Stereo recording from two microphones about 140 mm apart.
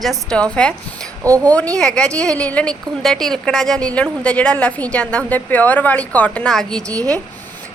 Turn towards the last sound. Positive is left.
turn(degrees=5)  # may be behind; listen again after turning